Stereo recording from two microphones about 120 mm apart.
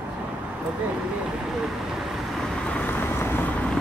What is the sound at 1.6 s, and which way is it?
Vehicle, centre (ahead or behind).